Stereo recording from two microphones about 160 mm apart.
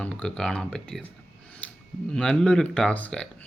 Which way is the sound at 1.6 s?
10° left (ahead or behind).